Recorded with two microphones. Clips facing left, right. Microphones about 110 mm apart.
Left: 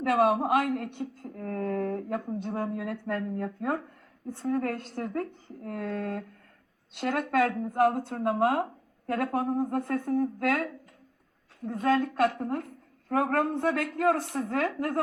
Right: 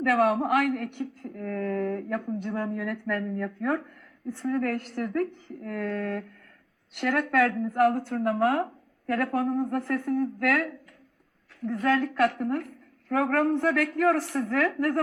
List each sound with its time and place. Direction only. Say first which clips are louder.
0.0 s a woman's voice: right 1 dB; 25° left (ahead or behind)
11.7 s a woman's voice: right 1 dB; 25° left (ahead or behind)